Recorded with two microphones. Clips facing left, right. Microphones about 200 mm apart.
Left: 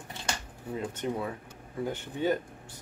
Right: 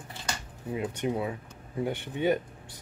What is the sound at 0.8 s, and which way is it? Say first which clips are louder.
Speech: right 3 dB; 10° right (ahead or behind).